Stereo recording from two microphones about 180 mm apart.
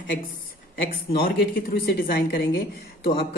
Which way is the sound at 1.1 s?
60° left (ahead or behind).